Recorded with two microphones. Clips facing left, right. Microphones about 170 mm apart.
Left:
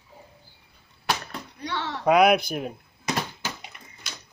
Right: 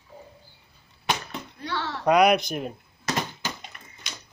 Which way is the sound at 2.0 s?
5° left (ahead or behind).